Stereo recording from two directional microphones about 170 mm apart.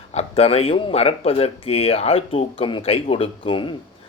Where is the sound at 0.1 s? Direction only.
35° left (ahead or behind).